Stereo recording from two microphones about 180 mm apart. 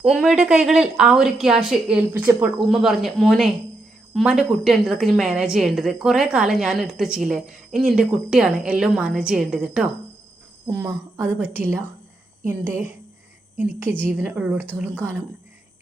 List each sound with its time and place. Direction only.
0.0 s a woman's voice: 5° right (ahead or behind)
14.0 s a woman's voice: 10° right (ahead or behind)